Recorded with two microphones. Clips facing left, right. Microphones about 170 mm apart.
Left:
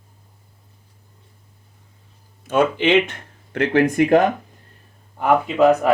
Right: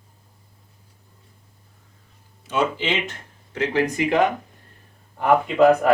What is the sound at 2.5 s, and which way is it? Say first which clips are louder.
Speech: left 6 dB; 55° left (ahead or behind).